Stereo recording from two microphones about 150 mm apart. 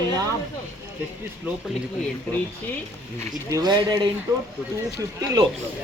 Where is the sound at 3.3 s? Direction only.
25° right (ahead or behind).